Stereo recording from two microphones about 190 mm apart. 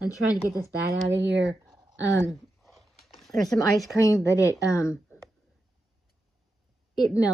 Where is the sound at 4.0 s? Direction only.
15° left (ahead or behind).